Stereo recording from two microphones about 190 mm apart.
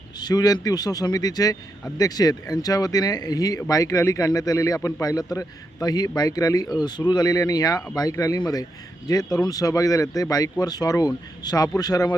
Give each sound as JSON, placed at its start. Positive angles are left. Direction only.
{"t": 0.2, "sound": "a man's voice", "side_deg": 20}